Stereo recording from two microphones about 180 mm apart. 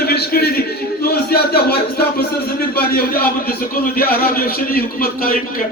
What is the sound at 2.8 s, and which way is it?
Speech, 55° left (ahead or behind).